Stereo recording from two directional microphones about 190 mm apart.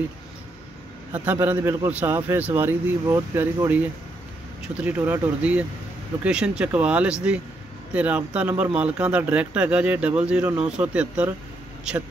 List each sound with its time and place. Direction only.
1.1 s a man's voice: 10° right (ahead or behind)
4.8 s a man's voice: 10° right (ahead or behind)